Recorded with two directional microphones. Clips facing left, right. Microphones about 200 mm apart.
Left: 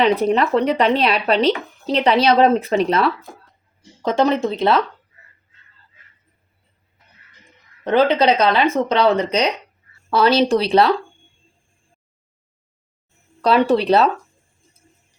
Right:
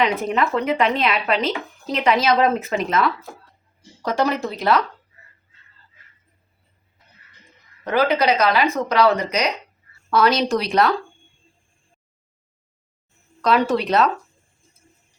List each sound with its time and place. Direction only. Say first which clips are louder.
0.0 s speech: left 4 dB; 35° left (ahead or behind)
7.9 s speech: left 3 dB; 30° left (ahead or behind)
13.4 s speech: left 3 dB; 30° left (ahead or behind)